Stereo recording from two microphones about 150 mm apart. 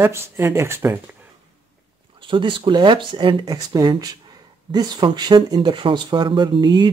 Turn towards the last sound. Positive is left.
turn(degrees=-30)  # may be behind; listen again after turning